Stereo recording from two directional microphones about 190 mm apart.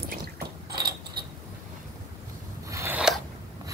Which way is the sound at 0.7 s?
55° right (ahead or behind).